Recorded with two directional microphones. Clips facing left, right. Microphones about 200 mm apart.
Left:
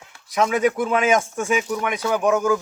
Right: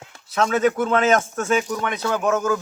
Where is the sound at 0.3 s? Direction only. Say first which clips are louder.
Even; 10° left (ahead or behind).